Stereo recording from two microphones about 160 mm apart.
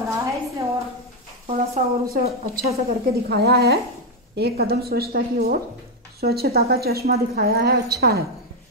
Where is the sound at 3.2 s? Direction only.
85° right.